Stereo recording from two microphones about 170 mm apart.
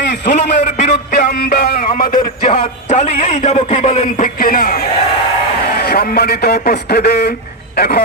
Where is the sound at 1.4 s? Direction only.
60° left (ahead or behind).